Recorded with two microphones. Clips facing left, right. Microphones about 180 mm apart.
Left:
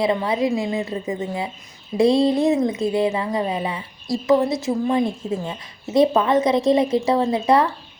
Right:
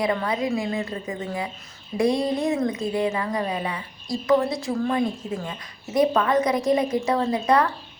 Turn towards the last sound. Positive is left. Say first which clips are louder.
# left 3 dB
turn(degrees=25)  # may be behind; listen again after turning